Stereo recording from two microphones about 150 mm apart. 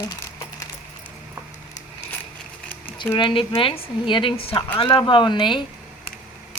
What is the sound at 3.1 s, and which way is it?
A woman's voice, 30° left (ahead or behind).